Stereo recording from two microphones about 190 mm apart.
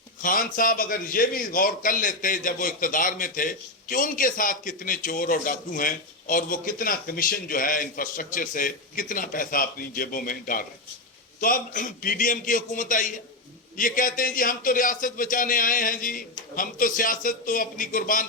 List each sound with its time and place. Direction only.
0.2 s a man's voice: 45° left (ahead or behind)